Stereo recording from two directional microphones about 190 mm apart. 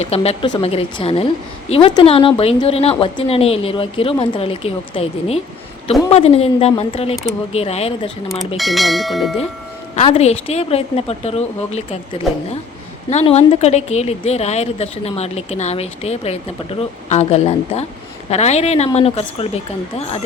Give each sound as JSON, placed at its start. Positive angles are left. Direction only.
{"t": 0.0, "sound": "a woman's voice", "side_deg": 35}
{"t": 8.5, "sound": "speech", "side_deg": 0}
{"t": 9.9, "sound": "a woman's voice", "side_deg": 35}
{"t": 13.1, "sound": "a woman's voice", "side_deg": 35}